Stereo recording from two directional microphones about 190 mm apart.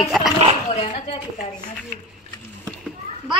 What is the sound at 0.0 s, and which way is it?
Speech, centre (ahead or behind).